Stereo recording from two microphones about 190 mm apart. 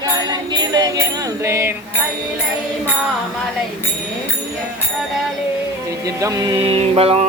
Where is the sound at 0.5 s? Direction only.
20° right (ahead or behind).